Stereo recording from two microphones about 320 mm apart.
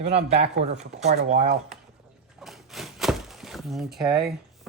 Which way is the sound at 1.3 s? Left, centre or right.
Right.